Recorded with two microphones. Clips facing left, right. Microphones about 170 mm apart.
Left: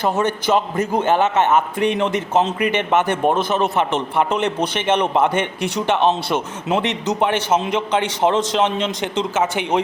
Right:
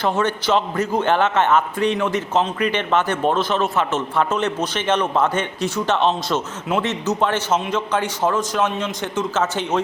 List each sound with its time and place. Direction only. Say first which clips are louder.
0.0 s a man's voice: left 1 dB; 10° left (ahead or behind)